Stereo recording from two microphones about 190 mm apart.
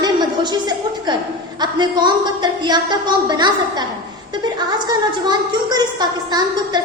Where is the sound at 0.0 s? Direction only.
25° right (ahead or behind).